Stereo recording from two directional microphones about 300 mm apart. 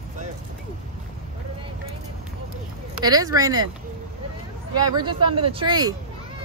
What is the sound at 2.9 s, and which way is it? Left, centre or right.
Speech, centre.